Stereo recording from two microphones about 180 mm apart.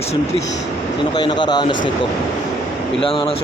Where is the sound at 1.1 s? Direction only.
25° left (ahead or behind).